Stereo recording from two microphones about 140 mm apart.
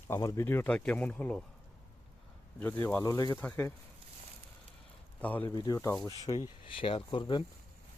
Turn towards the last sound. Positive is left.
turn(degrees=35)  # may be behind; listen again after turning